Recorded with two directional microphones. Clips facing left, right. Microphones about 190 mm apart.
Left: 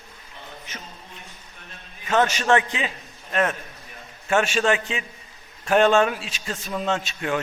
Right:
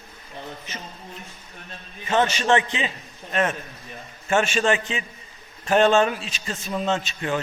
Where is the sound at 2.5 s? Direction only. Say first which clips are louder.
Even; centre (ahead or behind).